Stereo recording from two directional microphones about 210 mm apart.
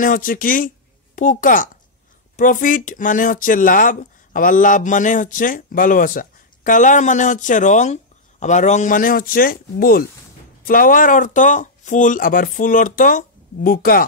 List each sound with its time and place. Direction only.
0.0 s speech: 40° left (ahead or behind)